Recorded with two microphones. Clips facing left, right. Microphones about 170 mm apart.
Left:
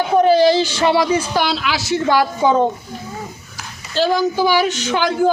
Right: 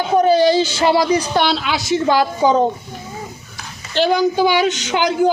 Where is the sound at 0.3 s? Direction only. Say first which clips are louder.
Left 1 dB; 20° right (ahead or behind).